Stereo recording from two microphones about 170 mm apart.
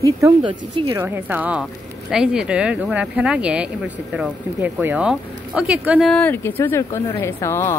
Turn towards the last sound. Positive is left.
turn(degrees=15)  # may be behind; listen again after turning